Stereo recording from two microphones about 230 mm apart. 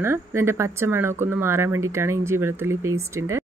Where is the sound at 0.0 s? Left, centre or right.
Centre.